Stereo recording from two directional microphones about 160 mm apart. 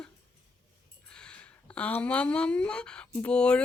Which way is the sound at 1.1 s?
5° left (ahead or behind).